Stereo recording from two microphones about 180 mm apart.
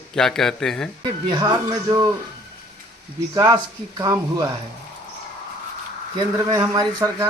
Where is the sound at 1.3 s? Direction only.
25° right (ahead or behind).